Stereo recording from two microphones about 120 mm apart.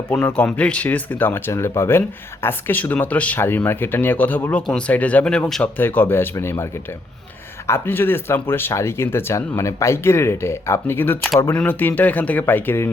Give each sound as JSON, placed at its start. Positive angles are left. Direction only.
{"t": 0.1, "sound": "speech", "side_deg": 10}
{"t": 7.7, "sound": "speech", "side_deg": 20}